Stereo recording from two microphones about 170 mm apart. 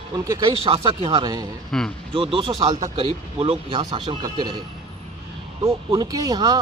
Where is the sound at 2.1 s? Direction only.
30° right (ahead or behind).